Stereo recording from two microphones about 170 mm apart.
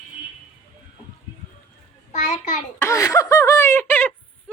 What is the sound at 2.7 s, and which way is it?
Speech, 15° left (ahead or behind).